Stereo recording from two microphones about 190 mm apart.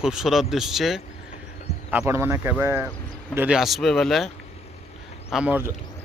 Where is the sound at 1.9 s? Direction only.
15° right (ahead or behind).